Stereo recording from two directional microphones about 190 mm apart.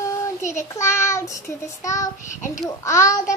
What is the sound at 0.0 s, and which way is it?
Child singing, 15° left (ahead or behind).